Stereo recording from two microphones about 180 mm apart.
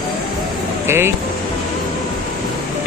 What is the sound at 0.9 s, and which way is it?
Speech, 15° right (ahead or behind).